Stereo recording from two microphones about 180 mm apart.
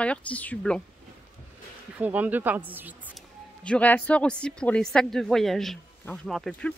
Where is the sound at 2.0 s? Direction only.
10° right (ahead or behind).